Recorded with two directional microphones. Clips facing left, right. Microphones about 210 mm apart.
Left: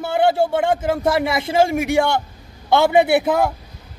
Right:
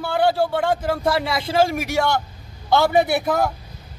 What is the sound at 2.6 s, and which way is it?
Speech, 25° left (ahead or behind).